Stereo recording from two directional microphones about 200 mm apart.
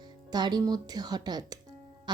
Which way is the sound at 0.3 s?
20° right (ahead or behind).